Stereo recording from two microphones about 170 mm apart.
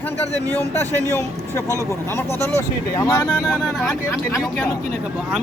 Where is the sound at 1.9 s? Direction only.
15° left (ahead or behind).